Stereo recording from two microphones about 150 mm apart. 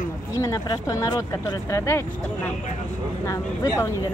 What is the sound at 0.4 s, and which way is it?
Speech, 20° left (ahead or behind).